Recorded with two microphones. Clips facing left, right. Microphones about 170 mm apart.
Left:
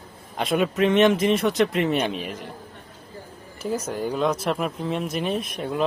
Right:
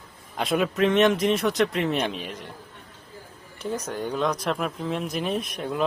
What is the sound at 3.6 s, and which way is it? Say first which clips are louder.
Speech: left 3 dB; 5° left (ahead or behind).